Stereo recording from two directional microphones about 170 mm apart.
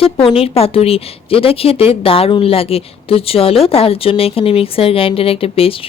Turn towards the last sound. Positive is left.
turn(degrees=35)  # may be behind; listen again after turning